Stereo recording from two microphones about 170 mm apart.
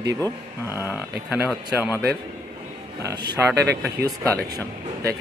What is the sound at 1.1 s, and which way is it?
Speech, 10° right (ahead or behind).